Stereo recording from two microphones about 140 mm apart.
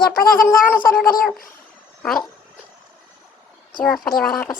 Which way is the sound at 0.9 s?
90° left.